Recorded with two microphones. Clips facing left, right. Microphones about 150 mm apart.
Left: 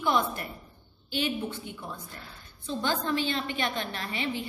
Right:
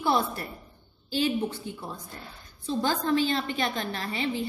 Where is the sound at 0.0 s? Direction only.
35° right (ahead or behind).